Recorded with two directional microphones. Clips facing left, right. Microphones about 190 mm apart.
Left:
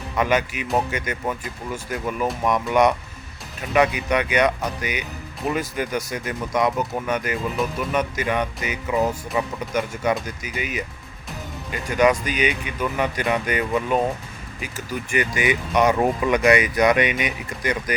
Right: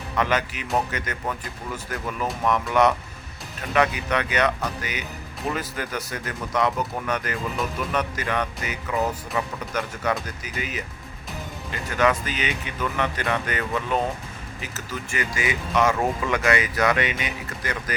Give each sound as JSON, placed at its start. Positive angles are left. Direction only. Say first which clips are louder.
{"t": 0.2, "sound": "speech", "louder": "left 3 dB", "side_deg": 10}